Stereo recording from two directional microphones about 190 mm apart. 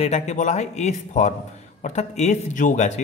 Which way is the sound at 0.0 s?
35° left (ahead or behind).